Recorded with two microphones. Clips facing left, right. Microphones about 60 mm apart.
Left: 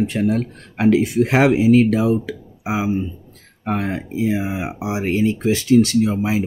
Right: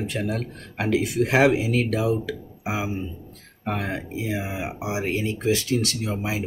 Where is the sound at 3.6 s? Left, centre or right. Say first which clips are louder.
Left 6 dB; left.